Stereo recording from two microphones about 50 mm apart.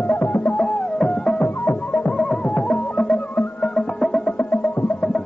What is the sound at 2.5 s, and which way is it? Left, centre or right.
Music, left.